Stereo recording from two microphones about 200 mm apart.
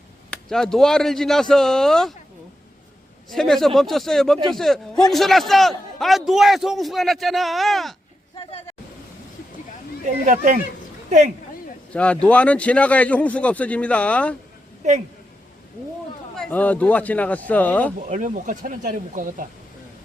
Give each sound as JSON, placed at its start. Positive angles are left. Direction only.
{"t": 0.3, "sound": "a man's voice", "side_deg": 5}
{"t": 3.2, "sound": "a man's voice", "side_deg": 0}
{"t": 8.4, "sound": "speech", "side_deg": 30}
{"t": 10.2, "sound": "speech", "side_deg": -40}
{"t": 11.9, "sound": "a man's voice", "side_deg": 5}
{"t": 14.8, "sound": "speech", "side_deg": -35}
{"t": 16.3, "sound": "a man's voice", "side_deg": 5}
{"t": 18.1, "sound": "speech", "side_deg": -40}